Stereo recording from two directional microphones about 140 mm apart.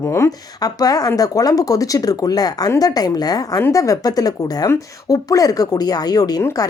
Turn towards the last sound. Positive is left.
turn(degrees=20)  # may be behind; listen again after turning